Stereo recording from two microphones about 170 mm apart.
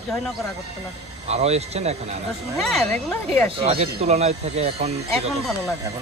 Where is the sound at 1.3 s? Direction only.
40° right (ahead or behind).